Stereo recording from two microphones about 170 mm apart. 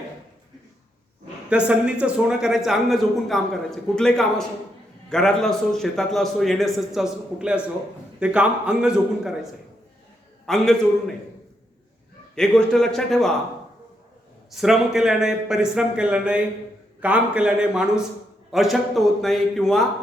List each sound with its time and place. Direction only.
1.5 s a man's voice: 5° right (ahead or behind)
12.3 s a man's voice: 5° left (ahead or behind)
14.5 s a man's voice: centre (ahead or behind)